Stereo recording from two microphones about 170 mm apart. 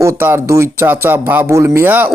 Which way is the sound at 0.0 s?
15° right (ahead or behind).